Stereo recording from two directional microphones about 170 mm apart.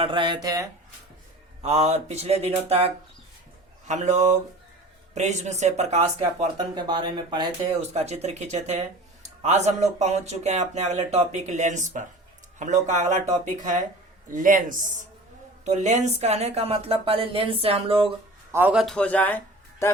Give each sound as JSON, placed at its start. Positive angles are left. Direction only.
{"t": 0.0, "sound": "speech", "side_deg": -30}
{"t": 1.6, "sound": "speech", "side_deg": -40}
{"t": 6.7, "sound": "speech", "side_deg": -25}
{"t": 7.8, "sound": "speech", "side_deg": -40}
{"t": 18.5, "sound": "speech", "side_deg": -10}